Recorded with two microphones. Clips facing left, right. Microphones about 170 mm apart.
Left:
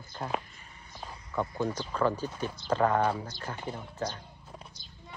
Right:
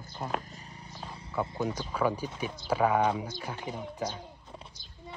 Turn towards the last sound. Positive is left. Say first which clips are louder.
# right 1 dB
turn(degrees=-10)  # may be behind; listen again after turning